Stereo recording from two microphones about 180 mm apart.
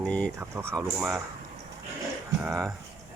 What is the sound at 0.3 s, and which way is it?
Speech, 15° right (ahead or behind).